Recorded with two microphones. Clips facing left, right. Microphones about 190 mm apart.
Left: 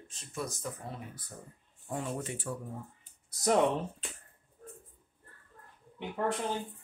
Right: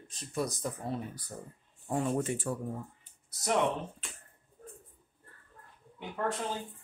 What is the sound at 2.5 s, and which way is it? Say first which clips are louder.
Speech: right 3 dB; 50° right (ahead or behind).